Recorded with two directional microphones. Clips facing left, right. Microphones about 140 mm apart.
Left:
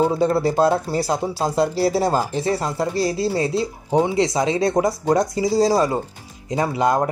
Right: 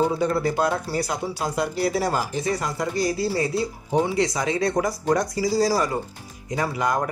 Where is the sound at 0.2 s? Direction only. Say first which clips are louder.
Left 5 dB; 30° left (ahead or behind).